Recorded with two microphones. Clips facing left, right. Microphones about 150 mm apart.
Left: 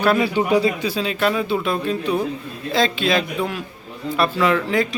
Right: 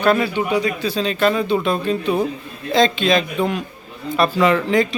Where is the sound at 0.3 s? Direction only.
35° left (ahead or behind).